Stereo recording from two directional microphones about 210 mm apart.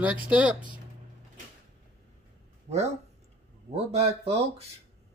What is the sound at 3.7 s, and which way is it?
Speech, 30° right (ahead or behind).